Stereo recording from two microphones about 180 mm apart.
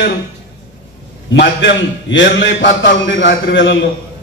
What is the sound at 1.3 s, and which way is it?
A man's voice, 80° left.